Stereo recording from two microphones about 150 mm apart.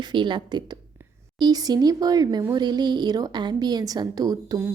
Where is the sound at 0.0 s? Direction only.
30° right (ahead or behind).